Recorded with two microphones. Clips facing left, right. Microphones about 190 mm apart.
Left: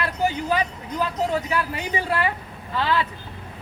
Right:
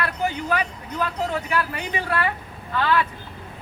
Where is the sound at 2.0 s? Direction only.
20° left (ahead or behind).